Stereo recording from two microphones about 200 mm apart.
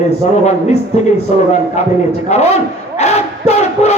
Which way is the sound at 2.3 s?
35° left (ahead or behind).